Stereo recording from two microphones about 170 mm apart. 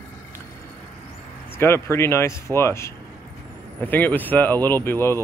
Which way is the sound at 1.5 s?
15° left (ahead or behind).